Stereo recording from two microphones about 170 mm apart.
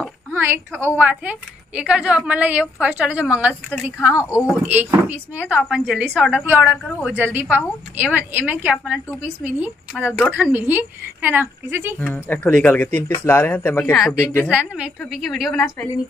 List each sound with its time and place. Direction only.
0.3 s a woman's voice: 15° right (ahead or behind)
4.2 s speech: 15° left (ahead or behind)
4.5 s a woman's voice: 10° right (ahead or behind)
12.0 s speech: 10° left (ahead or behind)
14.5 s a woman's voice: 5° right (ahead or behind)